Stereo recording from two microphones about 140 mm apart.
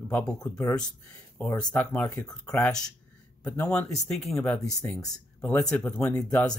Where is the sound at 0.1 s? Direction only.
5° left (ahead or behind).